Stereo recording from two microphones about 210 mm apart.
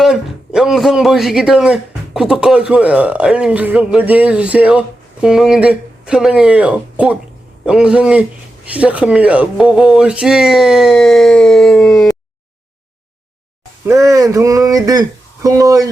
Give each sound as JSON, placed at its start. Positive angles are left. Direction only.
{"t": 0.0, "sound": "speech", "side_deg": 0}
{"t": 13.8, "sound": "speech", "side_deg": -15}